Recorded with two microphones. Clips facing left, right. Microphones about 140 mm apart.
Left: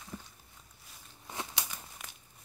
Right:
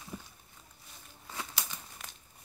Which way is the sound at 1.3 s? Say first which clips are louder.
Left 1 dB; 20° left (ahead or behind).